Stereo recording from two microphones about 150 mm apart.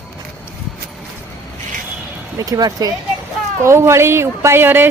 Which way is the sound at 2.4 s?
25° right (ahead or behind).